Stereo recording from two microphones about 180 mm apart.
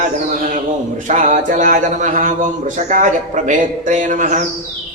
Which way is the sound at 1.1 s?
40° right (ahead or behind).